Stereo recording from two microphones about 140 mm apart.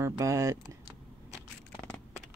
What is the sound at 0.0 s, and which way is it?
Speech, 25° right (ahead or behind).